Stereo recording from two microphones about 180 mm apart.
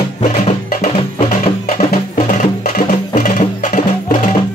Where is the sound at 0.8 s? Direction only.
40° left (ahead or behind).